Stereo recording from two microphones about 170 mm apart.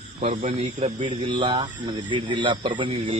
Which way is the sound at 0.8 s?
40° right (ahead or behind).